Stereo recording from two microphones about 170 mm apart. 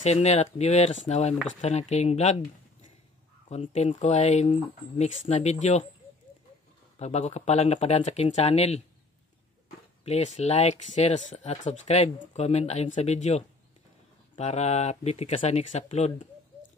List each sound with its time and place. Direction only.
0.0 s speech: 40° left (ahead or behind)
3.7 s speech: 40° left (ahead or behind)
7.0 s speech: 40° left (ahead or behind)
10.0 s speech: 40° left (ahead or behind)